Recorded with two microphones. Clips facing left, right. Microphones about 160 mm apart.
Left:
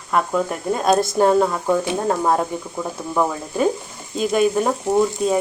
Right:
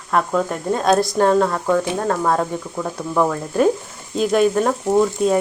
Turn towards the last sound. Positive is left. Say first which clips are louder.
# right 2 dB
turn(degrees=0)  # may be behind; listen again after turning